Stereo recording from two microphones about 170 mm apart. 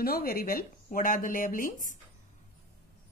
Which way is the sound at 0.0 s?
60° left (ahead or behind).